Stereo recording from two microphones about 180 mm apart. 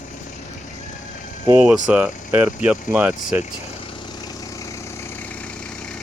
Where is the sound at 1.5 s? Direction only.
10° right (ahead or behind).